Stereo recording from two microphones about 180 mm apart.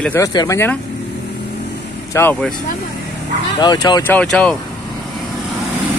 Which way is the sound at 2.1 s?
15° left (ahead or behind).